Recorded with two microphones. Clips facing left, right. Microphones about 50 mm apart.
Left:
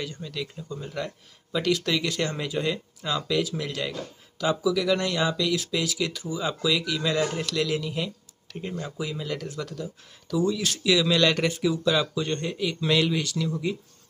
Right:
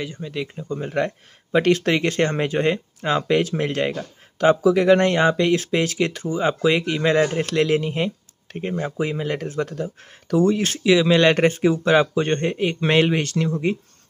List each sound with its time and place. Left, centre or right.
0.0 s speech: right
0.7 s speech: right
10.8 s speech: right